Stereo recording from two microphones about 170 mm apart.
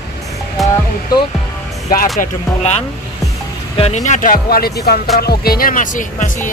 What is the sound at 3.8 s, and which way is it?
Speech, 40° left (ahead or behind).